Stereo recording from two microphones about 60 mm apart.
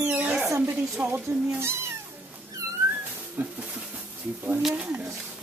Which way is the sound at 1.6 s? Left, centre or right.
Right.